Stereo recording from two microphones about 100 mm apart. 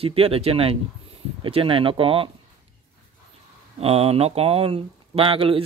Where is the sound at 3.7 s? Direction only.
85° right; by 5.6 s 65° right (ahead or behind).